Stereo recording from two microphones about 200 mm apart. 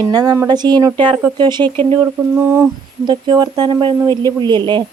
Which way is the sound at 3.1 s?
20° right (ahead or behind).